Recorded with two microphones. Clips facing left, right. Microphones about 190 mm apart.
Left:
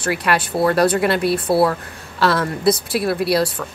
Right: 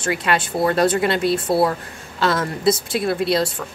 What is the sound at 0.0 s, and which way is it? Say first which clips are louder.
A woman's voice: left 1 dB; 25° right (ahead or behind).